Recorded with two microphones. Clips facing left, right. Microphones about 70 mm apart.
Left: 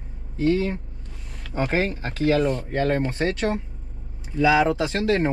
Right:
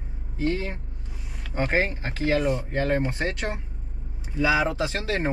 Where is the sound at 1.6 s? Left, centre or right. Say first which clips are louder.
Left 1 dB; right.